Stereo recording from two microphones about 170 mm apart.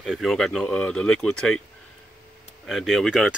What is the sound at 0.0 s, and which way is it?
Speech, centre (ahead or behind).